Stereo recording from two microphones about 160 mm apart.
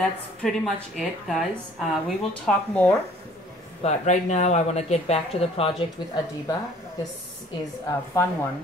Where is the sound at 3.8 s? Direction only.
45° left (ahead or behind).